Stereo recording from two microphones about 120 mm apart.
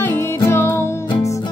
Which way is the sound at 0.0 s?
20° left (ahead or behind).